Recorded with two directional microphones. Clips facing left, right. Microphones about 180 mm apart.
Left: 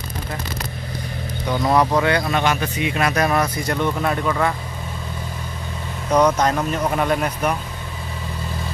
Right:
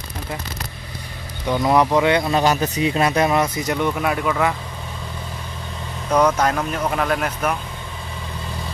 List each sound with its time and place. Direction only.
1.7 s speech: 15° right (ahead or behind)
2.3 s speech: 40° right (ahead or behind); by 4.6 s 5° right (ahead or behind)
6.0 s speech: 10° left (ahead or behind)